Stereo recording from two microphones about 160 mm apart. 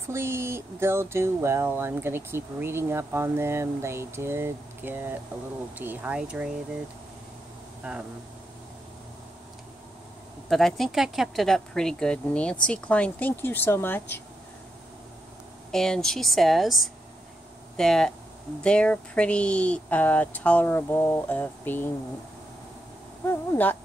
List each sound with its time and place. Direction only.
0.1 s speech: 15° right (ahead or behind)
7.8 s speech: 10° right (ahead or behind)
10.5 s speech: centre (ahead or behind)
15.7 s speech: 5° left (ahead or behind)
23.2 s speech: 15° left (ahead or behind)